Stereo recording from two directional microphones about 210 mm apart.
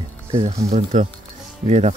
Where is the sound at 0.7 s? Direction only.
30° right (ahead or behind).